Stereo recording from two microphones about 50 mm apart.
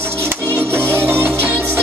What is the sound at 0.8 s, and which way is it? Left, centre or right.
Music, right.